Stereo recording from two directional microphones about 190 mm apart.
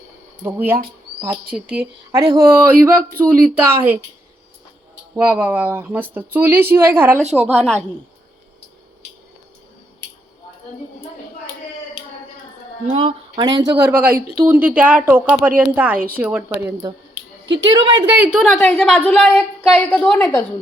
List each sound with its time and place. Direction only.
0.4 s a woman's voice: 10° right (ahead or behind)
2.1 s speech: 15° right (ahead or behind)
5.1 s speech: 10° right (ahead or behind)
7.5 s a woman's voice: centre (ahead or behind)
12.9 s speech: 25° right (ahead or behind)
13.9 s speech: 10° right (ahead or behind)
17.4 s a sound: 75° right (ahead or behind)
17.7 s speech: 25° right (ahead or behind)
18.2 s a woman's voice: centre (ahead or behind)